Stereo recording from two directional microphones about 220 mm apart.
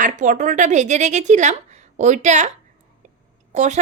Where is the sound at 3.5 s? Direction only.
35° right (ahead or behind).